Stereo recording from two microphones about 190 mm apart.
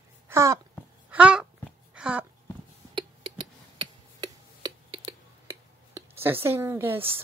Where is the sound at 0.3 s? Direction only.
15° right (ahead or behind).